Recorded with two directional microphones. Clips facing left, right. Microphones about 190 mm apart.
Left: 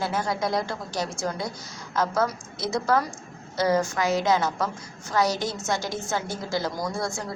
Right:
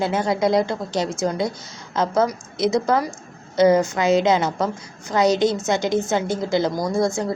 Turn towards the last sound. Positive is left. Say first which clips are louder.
# right 8 dB
turn(degrees=-20)  # may be behind; listen again after turning